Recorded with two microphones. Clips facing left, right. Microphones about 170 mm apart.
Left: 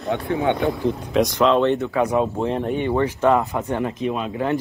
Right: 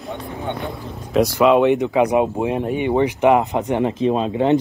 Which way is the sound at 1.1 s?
Centre (ahead or behind).